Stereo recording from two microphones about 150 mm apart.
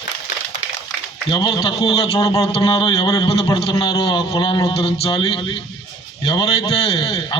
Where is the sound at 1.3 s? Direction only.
30° left (ahead or behind).